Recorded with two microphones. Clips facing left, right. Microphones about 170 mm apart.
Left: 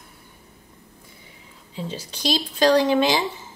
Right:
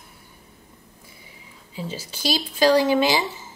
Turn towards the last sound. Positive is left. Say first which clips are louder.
# even
turn(degrees=-5)  # may be behind; listen again after turning